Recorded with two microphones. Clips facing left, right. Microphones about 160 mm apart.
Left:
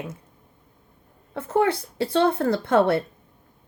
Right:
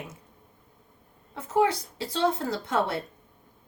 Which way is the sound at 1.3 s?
60° left (ahead or behind).